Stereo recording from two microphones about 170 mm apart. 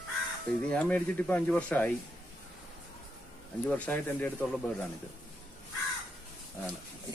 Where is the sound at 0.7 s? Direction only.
10° left (ahead or behind).